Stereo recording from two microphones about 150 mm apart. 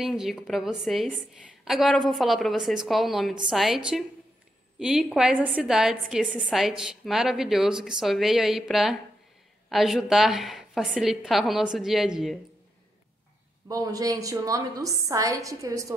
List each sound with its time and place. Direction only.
0.0 s a woman's voice: centre (ahead or behind)
13.7 s a woman's voice: 25° right (ahead or behind)